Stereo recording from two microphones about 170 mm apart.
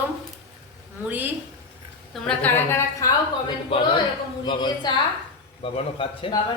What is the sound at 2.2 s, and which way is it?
Speech, 10° left (ahead or behind).